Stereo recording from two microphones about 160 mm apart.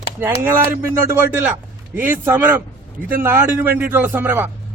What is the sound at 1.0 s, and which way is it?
A man's voice, 10° right (ahead or behind).